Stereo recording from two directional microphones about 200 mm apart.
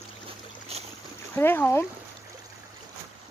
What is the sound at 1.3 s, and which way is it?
Speech, 10° left (ahead or behind).